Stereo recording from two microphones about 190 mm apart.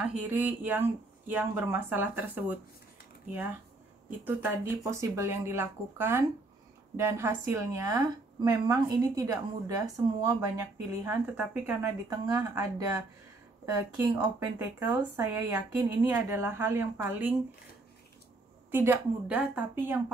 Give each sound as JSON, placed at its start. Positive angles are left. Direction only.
{"t": 0.0, "sound": "a woman's voice", "side_deg": -10}
{"t": 4.2, "sound": "a woman's voice", "side_deg": -10}
{"t": 14.6, "sound": "a woman's voice", "side_deg": -10}
{"t": 18.7, "sound": "a woman's voice", "side_deg": -10}